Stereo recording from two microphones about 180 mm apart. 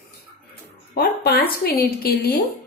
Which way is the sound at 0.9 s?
60° left (ahead or behind).